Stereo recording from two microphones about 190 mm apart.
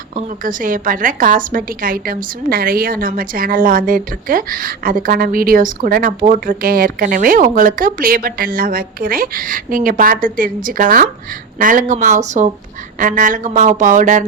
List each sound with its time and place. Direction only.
0.4 s a woman's voice: 45° right (ahead or behind)